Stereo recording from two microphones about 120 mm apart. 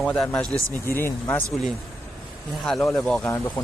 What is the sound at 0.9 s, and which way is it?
Speech, 20° left (ahead or behind).